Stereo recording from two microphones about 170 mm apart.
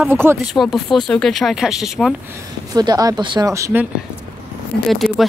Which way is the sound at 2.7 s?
20° right (ahead or behind).